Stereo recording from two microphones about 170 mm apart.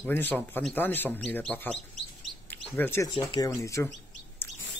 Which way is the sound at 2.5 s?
10° left (ahead or behind).